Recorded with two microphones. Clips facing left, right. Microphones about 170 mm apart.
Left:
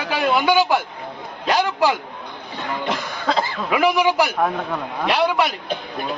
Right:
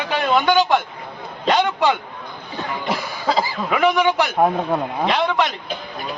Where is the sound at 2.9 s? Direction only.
5° right (ahead or behind).